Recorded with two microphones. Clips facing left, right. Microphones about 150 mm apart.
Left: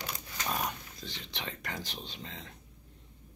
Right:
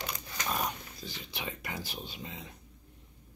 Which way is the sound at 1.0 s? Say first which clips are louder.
Right 1 dB; 5° right (ahead or behind).